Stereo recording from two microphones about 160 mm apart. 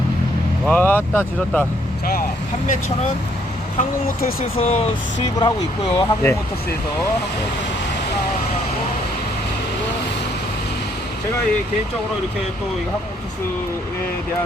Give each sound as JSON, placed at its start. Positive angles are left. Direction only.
{"t": 0.7, "sound": "speech", "side_deg": 10}
{"t": 3.8, "sound": "speech", "side_deg": 65}
{"t": 4.5, "sound": "speech", "side_deg": 40}
{"t": 5.4, "sound": "speech", "side_deg": 25}